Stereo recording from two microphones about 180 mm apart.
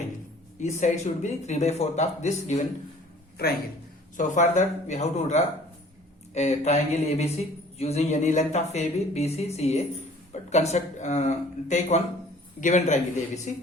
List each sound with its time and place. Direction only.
0.6 s speech: 40° left (ahead or behind)
3.4 s a man's voice: 60° left (ahead or behind)
4.2 s speech: 45° left (ahead or behind)